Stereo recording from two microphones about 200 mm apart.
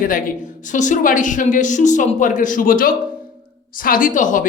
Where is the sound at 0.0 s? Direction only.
40° left (ahead or behind).